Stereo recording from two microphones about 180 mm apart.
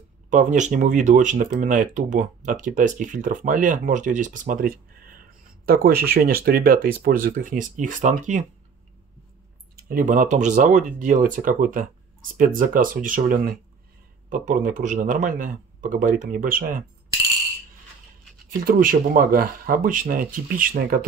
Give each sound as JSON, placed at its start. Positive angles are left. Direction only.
{"t": 0.3, "sound": "speech", "side_deg": -45}
{"t": 9.8, "sound": "speech", "side_deg": -55}
{"t": 18.6, "sound": "speech", "side_deg": -50}